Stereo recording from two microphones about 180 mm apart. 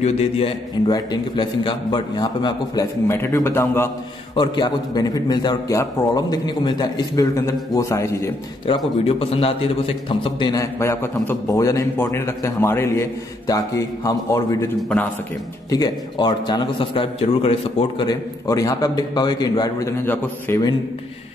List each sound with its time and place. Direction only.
0.0 s a man's voice: 35° left (ahead or behind)
0.8 s a man's voice: 25° left (ahead or behind)
4.4 s a man's voice: 25° left (ahead or behind)
8.6 s a man's voice: 30° left (ahead or behind)
14.8 s a man's voice: 5° left (ahead or behind)
15.7 s a man's voice: 20° left (ahead or behind)